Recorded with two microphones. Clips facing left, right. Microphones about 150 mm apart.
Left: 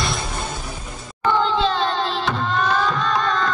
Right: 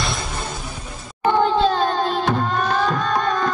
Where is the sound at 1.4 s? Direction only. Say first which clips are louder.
Right 4 dB; 50° right (ahead or behind).